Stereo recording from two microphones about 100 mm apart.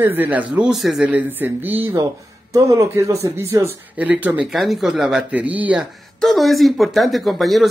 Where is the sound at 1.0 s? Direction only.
15° right (ahead or behind).